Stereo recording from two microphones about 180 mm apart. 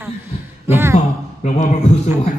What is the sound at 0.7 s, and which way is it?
Speech, 15° right (ahead or behind).